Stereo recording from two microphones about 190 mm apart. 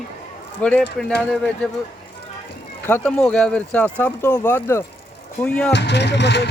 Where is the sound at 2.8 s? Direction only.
10° left (ahead or behind).